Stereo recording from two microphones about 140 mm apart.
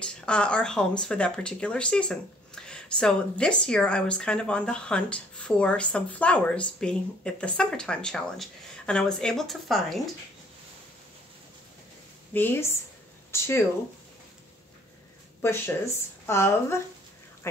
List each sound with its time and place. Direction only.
0.0 s speech: 5° left (ahead or behind)
12.4 s speech: 15° left (ahead or behind)
15.4 s speech: 20° left (ahead or behind)